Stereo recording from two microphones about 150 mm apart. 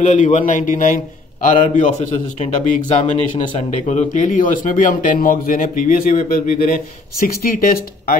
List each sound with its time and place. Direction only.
0.0 s a man's voice: 55° left (ahead or behind); by 8.2 s 70° left (ahead or behind)